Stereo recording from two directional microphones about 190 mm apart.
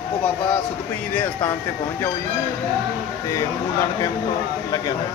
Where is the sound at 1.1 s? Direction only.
10° left (ahead or behind).